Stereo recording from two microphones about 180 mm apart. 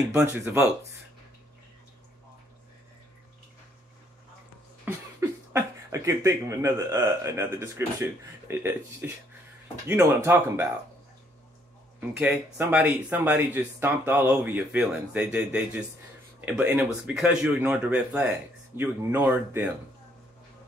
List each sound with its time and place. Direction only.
0.1 s speech: 15° right (ahead or behind)
4.8 s speech: 15° right (ahead or behind)
12.2 s speech: 5° right (ahead or behind)